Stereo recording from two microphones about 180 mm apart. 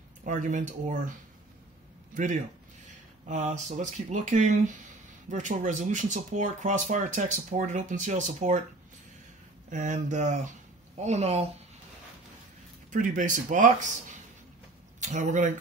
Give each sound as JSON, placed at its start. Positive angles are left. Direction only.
{"t": 0.2, "sound": "speech", "side_deg": -45}
{"t": 3.3, "sound": "speech", "side_deg": -40}
{"t": 9.7, "sound": "speech", "side_deg": -45}
{"t": 12.9, "sound": "speech", "side_deg": -45}
{"t": 15.0, "sound": "speech", "side_deg": -40}